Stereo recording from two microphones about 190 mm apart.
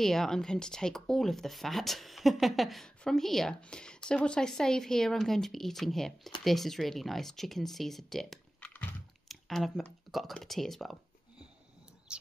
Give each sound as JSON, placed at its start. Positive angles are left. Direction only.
{"t": 0.0, "sound": "speech", "side_deg": 0}
{"t": 12.1, "sound": "bird", "side_deg": -5}